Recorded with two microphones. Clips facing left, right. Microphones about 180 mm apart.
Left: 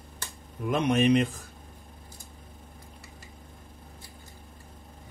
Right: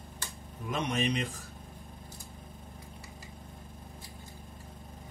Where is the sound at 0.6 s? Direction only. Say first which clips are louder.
Left 8 dB; 55° left (ahead or behind).